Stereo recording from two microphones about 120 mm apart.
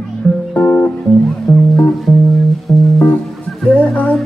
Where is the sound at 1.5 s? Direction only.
25° left (ahead or behind).